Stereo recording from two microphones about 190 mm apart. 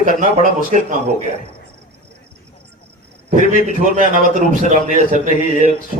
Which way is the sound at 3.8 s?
40° right (ahead or behind).